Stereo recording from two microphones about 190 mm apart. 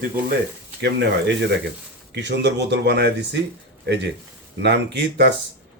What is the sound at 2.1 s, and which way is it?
Speech, 65° right (ahead or behind).